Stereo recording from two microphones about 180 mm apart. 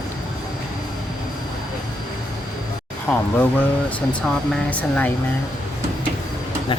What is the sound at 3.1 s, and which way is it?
Speech, centre (ahead or behind).